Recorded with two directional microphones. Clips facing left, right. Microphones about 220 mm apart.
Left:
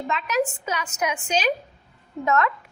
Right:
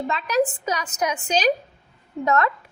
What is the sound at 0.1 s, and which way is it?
A woman's voice, 35° right (ahead or behind).